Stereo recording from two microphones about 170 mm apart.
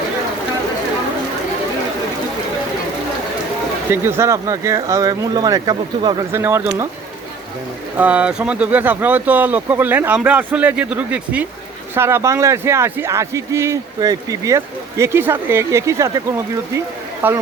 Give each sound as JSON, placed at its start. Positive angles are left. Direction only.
{"t": 3.8, "sound": "a man's voice", "side_deg": -15}
{"t": 7.9, "sound": "a man's voice", "side_deg": -10}
{"t": 17.2, "sound": "a man's voice", "side_deg": -10}